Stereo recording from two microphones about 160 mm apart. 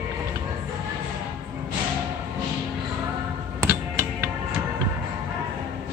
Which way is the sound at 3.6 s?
15° right (ahead or behind).